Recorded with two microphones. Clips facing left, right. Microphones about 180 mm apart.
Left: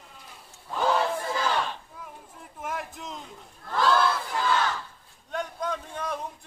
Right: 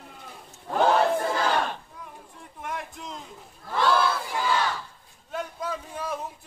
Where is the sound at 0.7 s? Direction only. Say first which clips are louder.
Right 4 dB; 55° right (ahead or behind).